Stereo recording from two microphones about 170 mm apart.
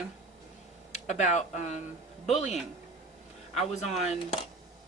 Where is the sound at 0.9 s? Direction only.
45° left (ahead or behind).